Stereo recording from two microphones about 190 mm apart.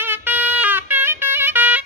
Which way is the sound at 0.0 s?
10° right (ahead or behind).